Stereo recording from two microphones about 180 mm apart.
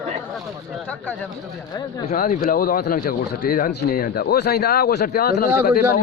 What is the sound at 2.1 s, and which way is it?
Speech, 50° left (ahead or behind).